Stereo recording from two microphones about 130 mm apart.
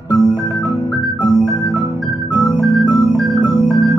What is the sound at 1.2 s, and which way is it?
Organ, 40° left (ahead or behind).